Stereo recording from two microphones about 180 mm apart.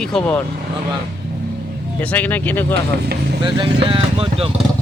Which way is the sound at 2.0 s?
10° left (ahead or behind).